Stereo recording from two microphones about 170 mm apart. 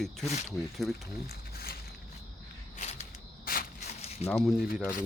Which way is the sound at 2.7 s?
45° left (ahead or behind).